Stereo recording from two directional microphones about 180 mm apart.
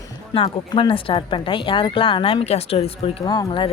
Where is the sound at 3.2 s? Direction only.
20° left (ahead or behind).